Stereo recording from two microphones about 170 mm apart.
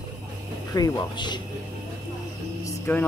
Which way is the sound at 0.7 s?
25° left (ahead or behind).